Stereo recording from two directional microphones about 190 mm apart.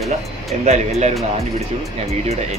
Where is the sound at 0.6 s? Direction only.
35° right (ahead or behind).